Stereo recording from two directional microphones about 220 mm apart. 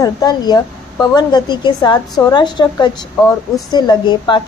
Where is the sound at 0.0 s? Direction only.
20° left (ahead or behind).